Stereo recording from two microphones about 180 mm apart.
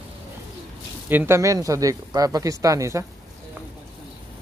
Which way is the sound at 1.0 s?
10° right (ahead or behind).